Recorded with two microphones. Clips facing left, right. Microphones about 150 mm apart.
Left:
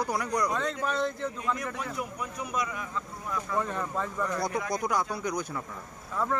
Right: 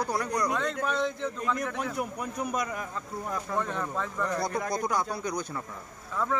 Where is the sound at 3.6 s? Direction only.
5° left (ahead or behind).